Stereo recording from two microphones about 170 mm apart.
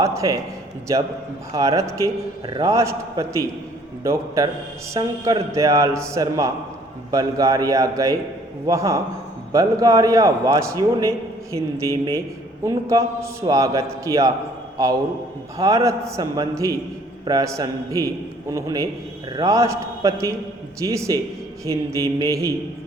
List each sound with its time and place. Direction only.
0.0 s a man's voice: 20° right (ahead or behind)